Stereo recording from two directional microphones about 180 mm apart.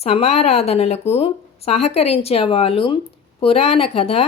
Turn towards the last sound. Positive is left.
turn(degrees=35)  # may be behind; listen again after turning